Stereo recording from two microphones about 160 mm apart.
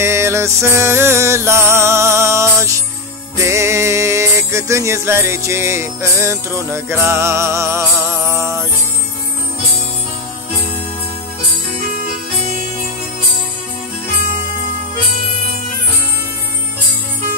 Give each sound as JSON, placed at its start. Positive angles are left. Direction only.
{"t": 0.0, "sound": "music", "side_deg": -15}